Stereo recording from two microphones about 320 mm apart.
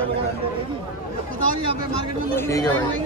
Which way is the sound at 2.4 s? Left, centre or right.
Centre.